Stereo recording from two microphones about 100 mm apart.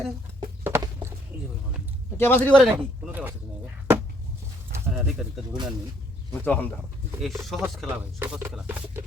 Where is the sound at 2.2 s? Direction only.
20° left (ahead or behind).